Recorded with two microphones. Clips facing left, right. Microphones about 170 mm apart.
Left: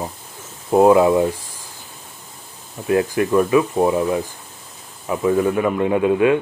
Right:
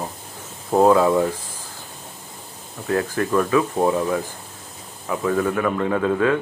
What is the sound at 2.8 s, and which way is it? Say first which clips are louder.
A man's voice: left 4 dB; 15° left (ahead or behind).